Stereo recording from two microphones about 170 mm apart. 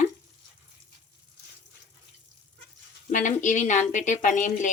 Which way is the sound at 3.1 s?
45° left (ahead or behind).